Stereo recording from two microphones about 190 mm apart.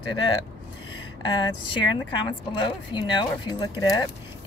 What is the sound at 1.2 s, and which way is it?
A woman's voice, 25° left (ahead or behind).